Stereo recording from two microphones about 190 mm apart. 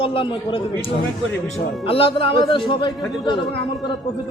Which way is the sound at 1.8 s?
30° left (ahead or behind).